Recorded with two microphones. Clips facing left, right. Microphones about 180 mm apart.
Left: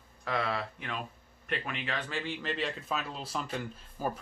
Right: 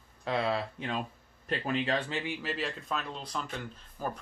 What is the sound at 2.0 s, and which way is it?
Speech, 20° right (ahead or behind).